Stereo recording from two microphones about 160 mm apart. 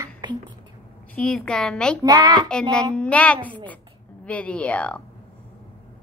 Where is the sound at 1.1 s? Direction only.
5° left (ahead or behind).